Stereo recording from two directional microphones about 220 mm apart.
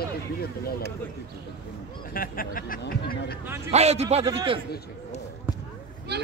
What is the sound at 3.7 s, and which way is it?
Speech, 30° right (ahead or behind).